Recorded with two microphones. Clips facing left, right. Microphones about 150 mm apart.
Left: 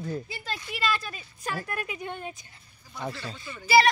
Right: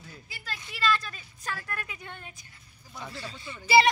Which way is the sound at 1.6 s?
15° left (ahead or behind).